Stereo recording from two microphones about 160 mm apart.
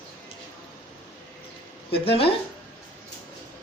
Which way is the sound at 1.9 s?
35° left (ahead or behind).